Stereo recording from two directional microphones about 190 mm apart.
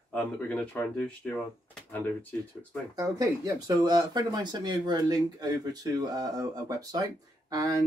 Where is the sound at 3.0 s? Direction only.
20° right (ahead or behind).